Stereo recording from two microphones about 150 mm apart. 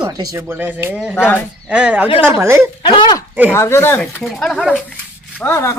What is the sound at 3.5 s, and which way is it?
Speech, 20° left (ahead or behind).